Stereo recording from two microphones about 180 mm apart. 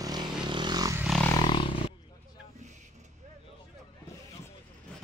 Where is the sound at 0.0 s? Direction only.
25° right (ahead or behind).